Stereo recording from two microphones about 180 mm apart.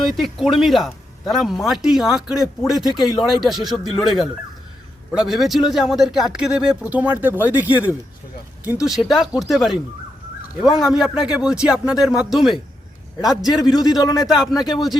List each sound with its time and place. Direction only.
0.0 s speech: centre (ahead or behind)
10.8 s speech: centre (ahead or behind)
13.4 s a man's voice: 20° left (ahead or behind)
14.3 s speech: centre (ahead or behind)